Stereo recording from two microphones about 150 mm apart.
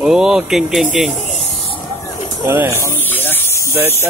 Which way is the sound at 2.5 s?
15° right (ahead or behind).